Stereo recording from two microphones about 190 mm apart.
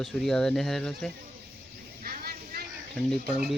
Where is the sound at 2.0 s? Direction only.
50° right (ahead or behind).